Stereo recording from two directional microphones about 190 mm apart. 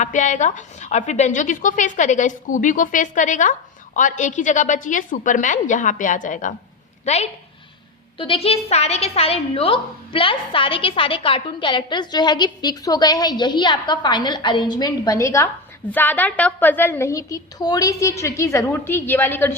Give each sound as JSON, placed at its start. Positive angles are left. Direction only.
{"t": 0.0, "sound": "a woman's voice", "side_deg": 40}